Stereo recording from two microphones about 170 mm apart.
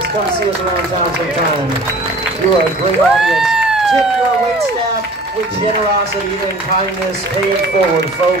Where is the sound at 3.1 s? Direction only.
Centre (ahead or behind).